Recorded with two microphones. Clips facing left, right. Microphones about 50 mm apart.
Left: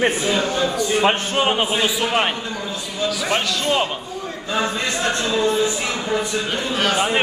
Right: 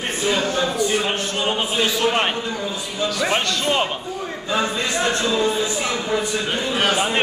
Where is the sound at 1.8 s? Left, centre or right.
Centre.